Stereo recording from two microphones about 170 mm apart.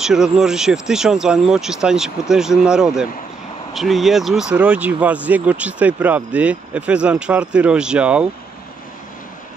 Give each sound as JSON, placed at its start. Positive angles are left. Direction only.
{"t": 0.0, "sound": "speech", "side_deg": -5}